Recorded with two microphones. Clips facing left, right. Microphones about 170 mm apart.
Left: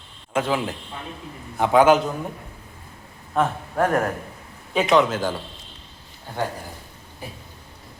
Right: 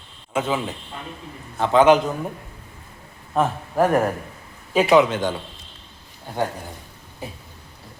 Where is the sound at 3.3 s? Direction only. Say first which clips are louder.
Right 1 dB; 5° right (ahead or behind).